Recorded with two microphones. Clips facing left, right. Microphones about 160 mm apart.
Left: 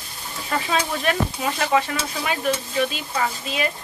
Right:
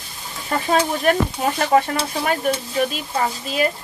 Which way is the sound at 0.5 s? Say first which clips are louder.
Right 4 dB; 45° right (ahead or behind).